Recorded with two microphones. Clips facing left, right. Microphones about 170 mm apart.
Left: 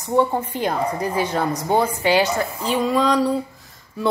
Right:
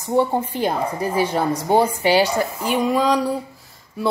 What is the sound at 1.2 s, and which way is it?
A woman's voice, 10° right (ahead or behind).